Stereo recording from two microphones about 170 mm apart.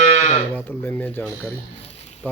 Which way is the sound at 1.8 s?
35° left (ahead or behind).